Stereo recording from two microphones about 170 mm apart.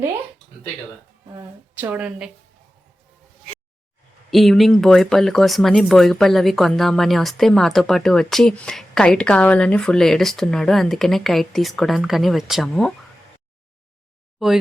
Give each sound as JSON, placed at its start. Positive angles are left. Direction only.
{"t": 1.4, "sound": "a woman's voice", "side_deg": -10}
{"t": 4.3, "sound": "speech", "side_deg": 0}
{"t": 14.3, "sound": "speech", "side_deg": 0}